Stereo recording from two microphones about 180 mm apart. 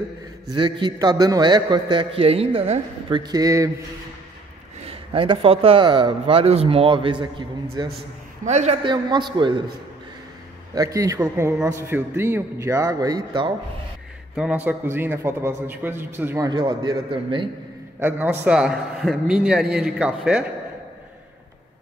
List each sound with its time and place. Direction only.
0.5 s a man's voice: 25° right (ahead or behind)
4.8 s a man's voice: 30° right (ahead or behind)
8.5 s a man's voice: 40° right (ahead or behind)
8.8 s a man's voice: 25° right (ahead or behind)
10.7 s a man's voice: 20° right (ahead or behind)
14.3 s a man's voice: 5° right (ahead or behind); by 17.5 s 25° right (ahead or behind)
17.9 s a man's voice: 10° right (ahead or behind)